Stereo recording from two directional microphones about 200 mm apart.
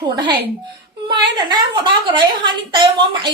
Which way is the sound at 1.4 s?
20° right (ahead or behind).